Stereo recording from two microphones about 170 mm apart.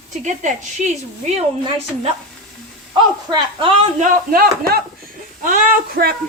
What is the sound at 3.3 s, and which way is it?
Speech, 30° right (ahead or behind).